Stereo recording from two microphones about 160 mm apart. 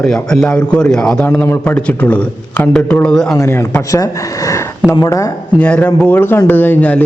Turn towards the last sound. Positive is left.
turn(degrees=10)  # may be behind; listen again after turning